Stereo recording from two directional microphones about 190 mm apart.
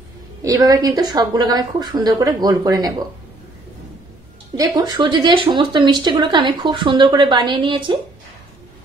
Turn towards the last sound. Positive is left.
turn(degrees=-25)  # may be behind; listen again after turning